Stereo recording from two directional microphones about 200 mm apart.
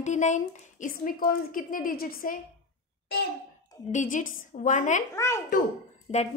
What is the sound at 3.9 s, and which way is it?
A woman's voice, 40° left (ahead or behind).